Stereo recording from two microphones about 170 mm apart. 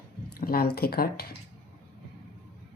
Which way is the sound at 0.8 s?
65° left (ahead or behind).